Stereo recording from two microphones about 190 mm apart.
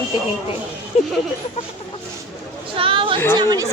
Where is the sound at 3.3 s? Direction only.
20° right (ahead or behind).